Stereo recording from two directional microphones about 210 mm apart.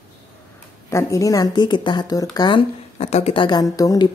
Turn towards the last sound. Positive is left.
turn(degrees=15)  # may be behind; listen again after turning